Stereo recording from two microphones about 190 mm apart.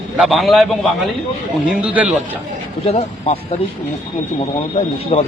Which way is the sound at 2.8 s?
35° left (ahead or behind).